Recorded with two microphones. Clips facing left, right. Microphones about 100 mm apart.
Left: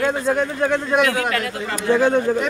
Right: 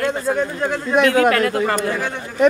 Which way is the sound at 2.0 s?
40° left (ahead or behind).